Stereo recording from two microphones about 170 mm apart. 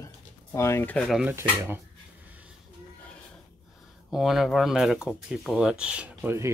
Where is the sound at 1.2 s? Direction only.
15° right (ahead or behind).